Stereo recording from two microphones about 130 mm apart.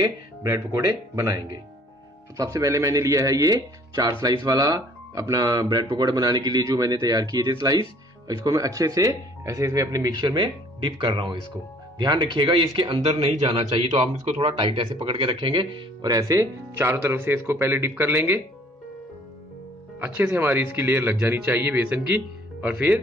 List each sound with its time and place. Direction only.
0.0 s speech: 25° right (ahead or behind)
13.5 s speech: 45° right (ahead or behind); by 18.4 s 15° right (ahead or behind)
20.0 s speech: 15° right (ahead or behind)